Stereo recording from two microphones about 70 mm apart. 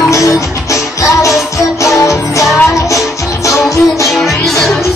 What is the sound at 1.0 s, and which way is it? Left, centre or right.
Music, left.